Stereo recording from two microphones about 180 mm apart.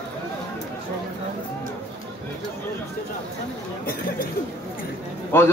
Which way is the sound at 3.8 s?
55° left (ahead or behind).